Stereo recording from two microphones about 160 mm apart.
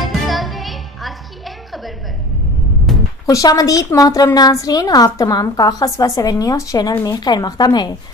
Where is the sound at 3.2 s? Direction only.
20° left (ahead or behind).